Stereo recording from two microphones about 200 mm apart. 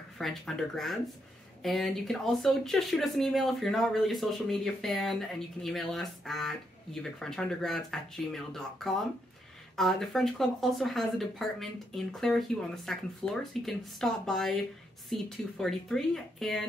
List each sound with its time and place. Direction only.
0.2 s speech: centre (ahead or behind)